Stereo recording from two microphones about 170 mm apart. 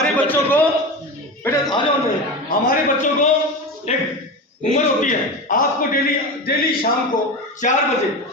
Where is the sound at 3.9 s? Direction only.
40° left (ahead or behind).